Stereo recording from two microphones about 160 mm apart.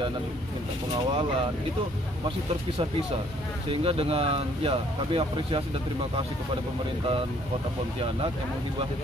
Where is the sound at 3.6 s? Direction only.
35° right (ahead or behind).